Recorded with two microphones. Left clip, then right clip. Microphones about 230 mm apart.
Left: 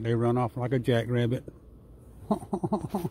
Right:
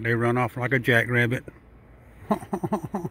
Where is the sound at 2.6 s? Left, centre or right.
Centre.